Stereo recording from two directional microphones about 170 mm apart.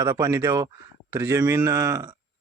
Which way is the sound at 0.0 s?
20° right (ahead or behind).